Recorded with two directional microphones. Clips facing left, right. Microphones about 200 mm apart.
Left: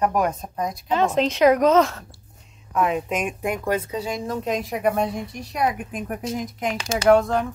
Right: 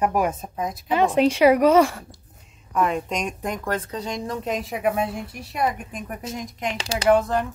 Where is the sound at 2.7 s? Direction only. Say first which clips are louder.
Left 1 dB; centre (ahead or behind).